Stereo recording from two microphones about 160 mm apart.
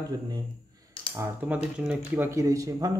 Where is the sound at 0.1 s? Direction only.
20° right (ahead or behind).